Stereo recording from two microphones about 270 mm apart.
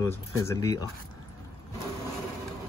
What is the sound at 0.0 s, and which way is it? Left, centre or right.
Speech, centre.